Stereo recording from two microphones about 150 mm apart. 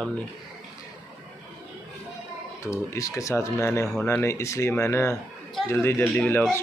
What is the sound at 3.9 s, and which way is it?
Speech, 5° left (ahead or behind).